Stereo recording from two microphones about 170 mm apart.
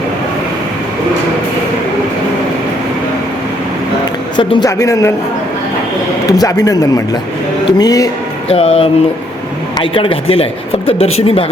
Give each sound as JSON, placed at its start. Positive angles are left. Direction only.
{"t": 4.4, "sound": "speech", "side_deg": 20}
{"t": 6.3, "sound": "speech", "side_deg": 20}
{"t": 8.4, "sound": "speech", "side_deg": 35}